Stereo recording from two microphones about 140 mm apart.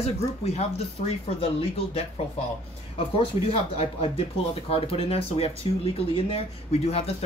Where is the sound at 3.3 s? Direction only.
25° right (ahead or behind).